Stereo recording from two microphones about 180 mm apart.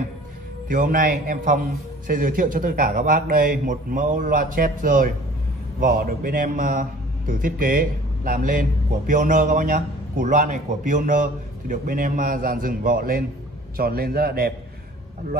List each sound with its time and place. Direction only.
0.7 s a man's voice: 50° right (ahead or behind)